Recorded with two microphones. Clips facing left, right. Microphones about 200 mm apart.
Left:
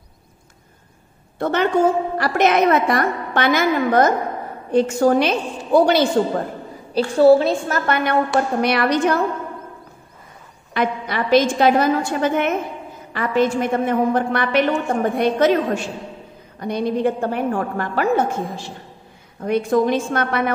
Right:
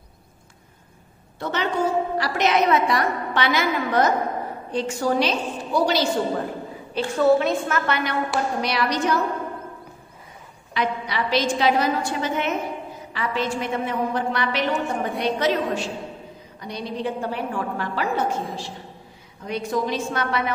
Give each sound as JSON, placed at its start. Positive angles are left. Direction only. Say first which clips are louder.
{"t": 1.4, "sound": "a woman's voice", "louder": "left 7 dB", "side_deg": 55}
{"t": 6.9, "sound": "a woman's voice", "louder": "left 6 dB", "side_deg": 35}
{"t": 10.7, "sound": "a woman's voice", "louder": "left 4 dB", "side_deg": 50}
{"t": 19.4, "sound": "a woman's voice", "louder": "left 8 dB", "side_deg": 55}